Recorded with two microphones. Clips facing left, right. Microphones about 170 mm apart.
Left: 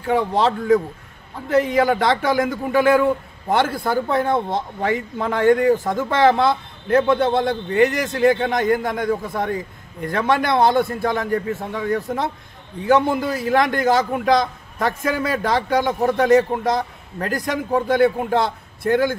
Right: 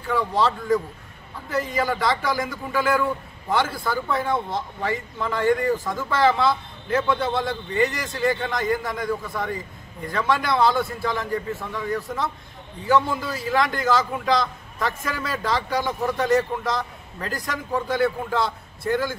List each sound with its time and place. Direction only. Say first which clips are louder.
0.0 s a man's voice: left 4 dB; 55° left (ahead or behind)
1.5 s a man's voice: left 8 dB; 65° left (ahead or behind)